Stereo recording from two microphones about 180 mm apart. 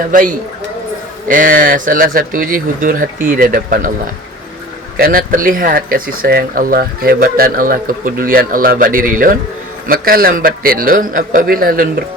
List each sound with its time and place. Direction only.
0.1 s speech: 50° right (ahead or behind)
4.9 s speech: 55° right (ahead or behind)